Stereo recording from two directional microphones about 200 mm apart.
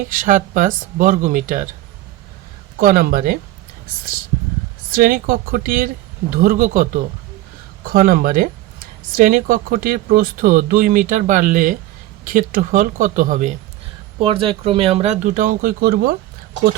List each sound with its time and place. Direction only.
0.1 s speech: 40° right (ahead or behind)
2.7 s speech: 45° right (ahead or behind)
4.9 s speech: 45° right (ahead or behind)
14.2 s speech: 25° right (ahead or behind); by 16.1 s 50° right (ahead or behind)